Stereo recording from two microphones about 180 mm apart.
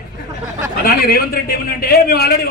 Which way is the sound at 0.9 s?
60° left (ahead or behind).